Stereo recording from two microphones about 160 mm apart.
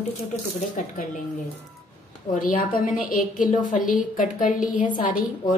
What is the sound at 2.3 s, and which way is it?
A woman's voice, 55° left (ahead or behind).